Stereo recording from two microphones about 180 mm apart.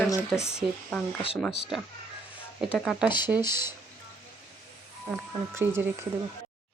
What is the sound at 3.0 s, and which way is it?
Speech, 25° left (ahead or behind).